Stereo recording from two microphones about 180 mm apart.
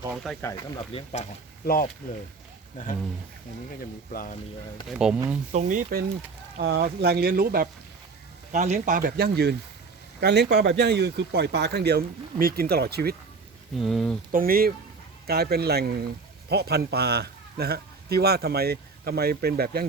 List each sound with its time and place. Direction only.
0.3 s speech: centre (ahead or behind)
0.8 s speech: 35° left (ahead or behind)
1.6 s speech: 55° left (ahead or behind)
3.8 s speech: 50° left (ahead or behind)
4.9 s speech: 5° right (ahead or behind)
5.5 s speech: 45° right (ahead or behind)
6.6 s speech: 65° right (ahead or behind)
8.5 s speech: 40° right (ahead or behind); by 13.1 s 60° right (ahead or behind)
13.7 s speech: centre (ahead or behind)
14.3 s speech: 55° right (ahead or behind)